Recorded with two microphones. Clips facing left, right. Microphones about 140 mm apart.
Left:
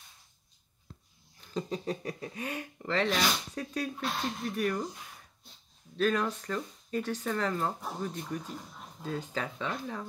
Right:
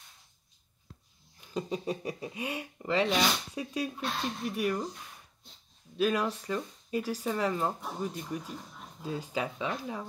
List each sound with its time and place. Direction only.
1.5 s speech: 5° right (ahead or behind)
5.9 s speech: 5° right (ahead or behind)